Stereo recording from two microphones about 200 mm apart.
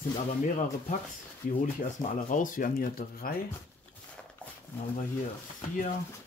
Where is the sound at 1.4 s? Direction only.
45° left (ahead or behind).